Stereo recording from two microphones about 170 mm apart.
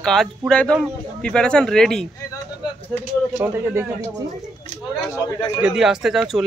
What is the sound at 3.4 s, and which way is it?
Speech, 15° right (ahead or behind).